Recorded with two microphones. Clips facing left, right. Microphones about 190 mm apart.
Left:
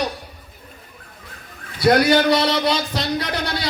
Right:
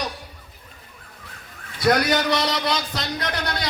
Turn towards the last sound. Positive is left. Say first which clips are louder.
# left 3 dB
turn(degrees=30)  # may be behind; listen again after turning